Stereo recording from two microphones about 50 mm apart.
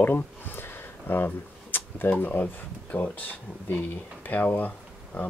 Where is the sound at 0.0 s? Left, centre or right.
Left.